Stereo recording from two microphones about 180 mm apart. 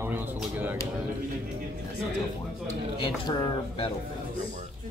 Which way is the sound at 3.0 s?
25° left (ahead or behind).